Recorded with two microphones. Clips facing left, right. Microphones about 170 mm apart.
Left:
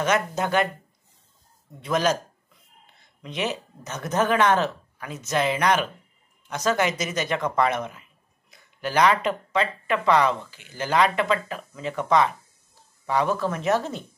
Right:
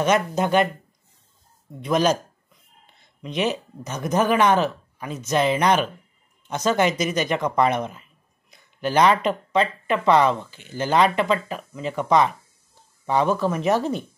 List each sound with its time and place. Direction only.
0.0 s speech: 15° right (ahead or behind)
1.9 s speech: 20° right (ahead or behind)
3.2 s a woman's voice: 20° right (ahead or behind)